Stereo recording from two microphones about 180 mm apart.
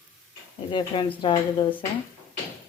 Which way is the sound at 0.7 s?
25° left (ahead or behind).